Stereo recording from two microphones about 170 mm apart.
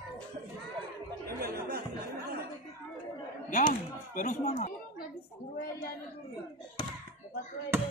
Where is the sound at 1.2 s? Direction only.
65° right (ahead or behind).